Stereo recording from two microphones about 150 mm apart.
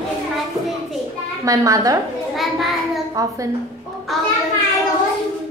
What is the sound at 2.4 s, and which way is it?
Speech, centre (ahead or behind).